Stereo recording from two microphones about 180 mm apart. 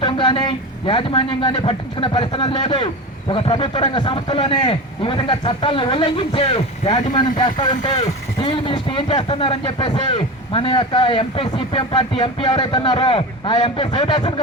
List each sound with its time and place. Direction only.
0.0 s speech: 25° left (ahead or behind)